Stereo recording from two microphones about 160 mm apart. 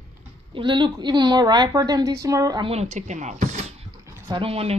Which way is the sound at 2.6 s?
40° right (ahead or behind).